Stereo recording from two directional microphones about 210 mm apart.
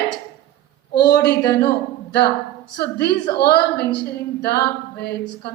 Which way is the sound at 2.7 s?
50° left (ahead or behind).